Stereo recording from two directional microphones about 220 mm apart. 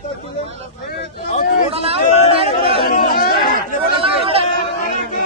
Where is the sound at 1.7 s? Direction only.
25° right (ahead or behind).